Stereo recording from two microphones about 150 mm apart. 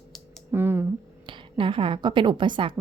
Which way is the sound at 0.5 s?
15° right (ahead or behind).